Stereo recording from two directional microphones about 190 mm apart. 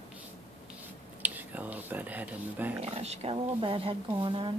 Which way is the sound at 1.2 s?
10° right (ahead or behind).